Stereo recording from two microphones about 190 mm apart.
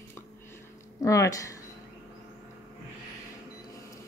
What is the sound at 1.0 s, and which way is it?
Speech, 15° left (ahead or behind).